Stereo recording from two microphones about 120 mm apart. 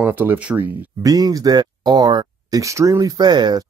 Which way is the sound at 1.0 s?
30° right (ahead or behind).